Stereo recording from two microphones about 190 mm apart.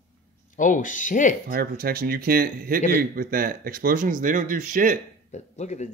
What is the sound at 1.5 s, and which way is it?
Speech, 50° right (ahead or behind).